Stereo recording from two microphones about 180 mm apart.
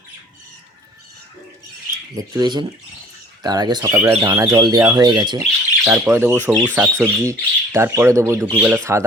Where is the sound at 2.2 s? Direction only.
25° right (ahead or behind).